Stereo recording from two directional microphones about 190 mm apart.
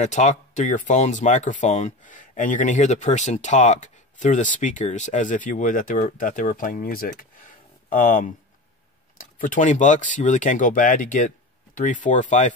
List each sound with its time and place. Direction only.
0.0 s speech: 40° left (ahead or behind)